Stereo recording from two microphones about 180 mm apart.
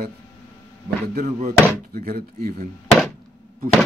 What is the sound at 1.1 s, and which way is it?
Speech, 55° right (ahead or behind).